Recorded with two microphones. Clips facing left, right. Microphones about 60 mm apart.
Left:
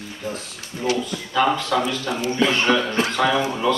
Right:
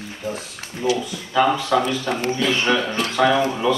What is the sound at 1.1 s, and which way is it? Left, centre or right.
Speech, centre.